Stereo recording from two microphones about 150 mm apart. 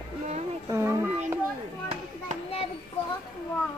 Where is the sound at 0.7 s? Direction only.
20° right (ahead or behind).